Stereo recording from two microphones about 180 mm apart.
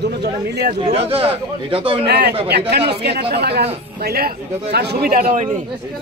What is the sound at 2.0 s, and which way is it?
A man's voice, 65° right (ahead or behind).